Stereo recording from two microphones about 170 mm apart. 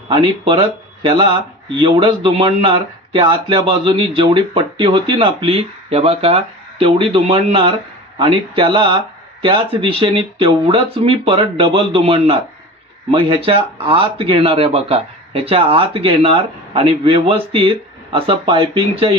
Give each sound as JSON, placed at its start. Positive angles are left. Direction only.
{"t": 0.1, "sound": "speech", "side_deg": -30}